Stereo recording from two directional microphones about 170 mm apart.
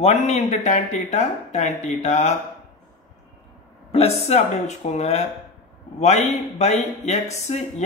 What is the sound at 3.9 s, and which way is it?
Speech, 40° left (ahead or behind).